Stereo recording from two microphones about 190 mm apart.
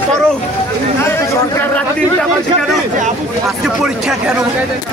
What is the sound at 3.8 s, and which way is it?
Speech, 5° right (ahead or behind).